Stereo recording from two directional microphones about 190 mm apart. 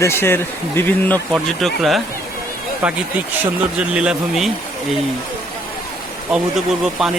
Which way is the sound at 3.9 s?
5° right (ahead or behind).